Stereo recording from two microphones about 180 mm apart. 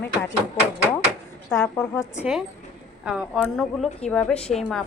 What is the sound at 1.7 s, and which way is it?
Speech, 15° left (ahead or behind).